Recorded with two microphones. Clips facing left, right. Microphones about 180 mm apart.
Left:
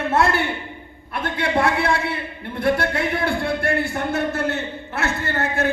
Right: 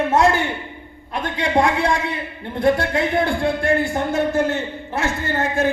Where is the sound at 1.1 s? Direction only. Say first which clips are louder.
Right 2 dB; 15° right (ahead or behind).